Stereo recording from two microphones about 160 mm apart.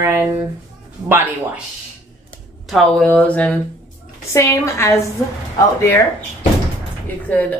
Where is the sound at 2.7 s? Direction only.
Centre (ahead or behind); by 4.9 s 15° left (ahead or behind).